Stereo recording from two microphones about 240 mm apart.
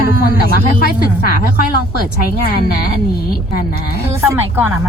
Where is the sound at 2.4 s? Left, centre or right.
Left.